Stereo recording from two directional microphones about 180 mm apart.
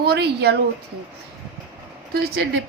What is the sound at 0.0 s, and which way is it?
Speech, 65° right (ahead or behind).